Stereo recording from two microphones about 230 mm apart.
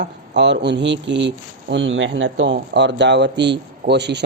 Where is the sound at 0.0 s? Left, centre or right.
Right.